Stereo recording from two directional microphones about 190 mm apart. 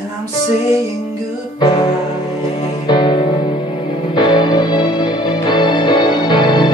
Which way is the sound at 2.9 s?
25° left (ahead or behind).